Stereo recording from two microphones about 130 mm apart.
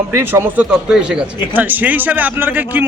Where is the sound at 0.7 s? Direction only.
5° right (ahead or behind).